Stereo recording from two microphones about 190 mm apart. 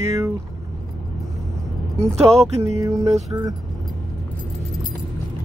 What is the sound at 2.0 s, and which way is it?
Speech, 15° right (ahead or behind).